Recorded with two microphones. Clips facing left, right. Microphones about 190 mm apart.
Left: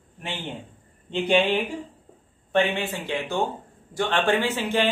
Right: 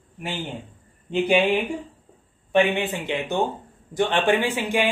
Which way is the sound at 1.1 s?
10° right (ahead or behind).